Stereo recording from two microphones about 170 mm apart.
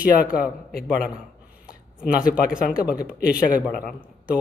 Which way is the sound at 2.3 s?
5° right (ahead or behind).